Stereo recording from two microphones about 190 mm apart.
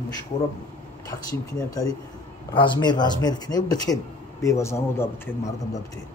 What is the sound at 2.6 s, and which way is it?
A man's voice, 25° left (ahead or behind).